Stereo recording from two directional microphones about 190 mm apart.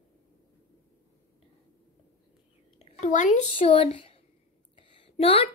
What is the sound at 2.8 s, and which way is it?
A woman's voice, 40° left (ahead or behind).